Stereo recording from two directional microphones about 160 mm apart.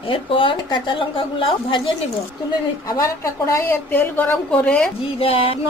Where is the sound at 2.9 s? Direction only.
20° left (ahead or behind).